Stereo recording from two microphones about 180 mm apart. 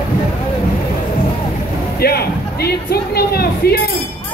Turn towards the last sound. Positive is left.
turn(degrees=60)  # may be behind; listen again after turning